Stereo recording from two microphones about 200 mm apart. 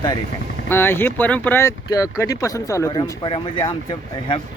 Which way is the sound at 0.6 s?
10° left (ahead or behind).